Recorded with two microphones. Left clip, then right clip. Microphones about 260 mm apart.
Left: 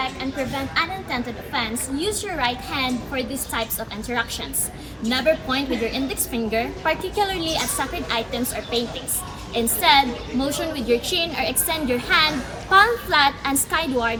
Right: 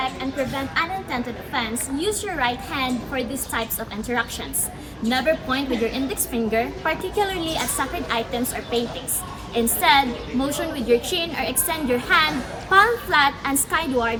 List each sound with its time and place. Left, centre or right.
0.0 s a woman's voice: centre
9.6 s a woman's voice: centre